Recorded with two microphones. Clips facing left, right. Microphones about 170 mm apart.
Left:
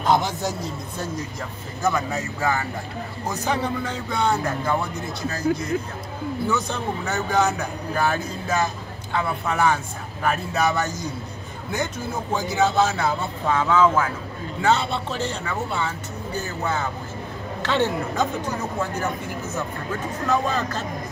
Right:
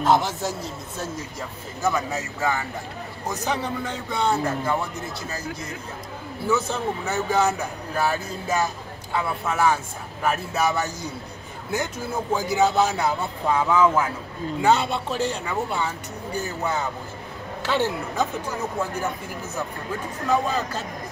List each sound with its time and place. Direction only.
0.0 s speech: 5° right (ahead or behind)
6.4 s speech: 5° right (ahead or behind)
12.4 s a man's voice: 15° right (ahead or behind)
17.6 s a man's voice: 5° right (ahead or behind)